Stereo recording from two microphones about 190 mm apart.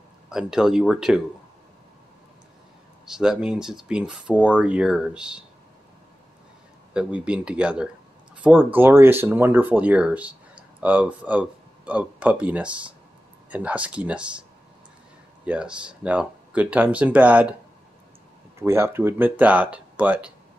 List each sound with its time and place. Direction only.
0.3 s speech: 5° right (ahead or behind)
3.1 s speech: 5° right (ahead or behind)
6.9 s speech: 5° right (ahead or behind)
15.4 s speech: 5° right (ahead or behind)
18.6 s speech: 15° right (ahead or behind)